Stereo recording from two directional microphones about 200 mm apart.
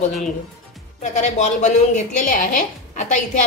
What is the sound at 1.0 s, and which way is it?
A woman's voice, 35° left (ahead or behind).